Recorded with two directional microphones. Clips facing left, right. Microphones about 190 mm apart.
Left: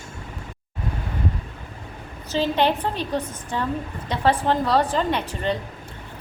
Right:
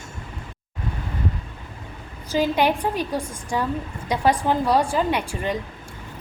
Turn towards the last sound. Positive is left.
turn(degrees=-10)  # may be behind; listen again after turning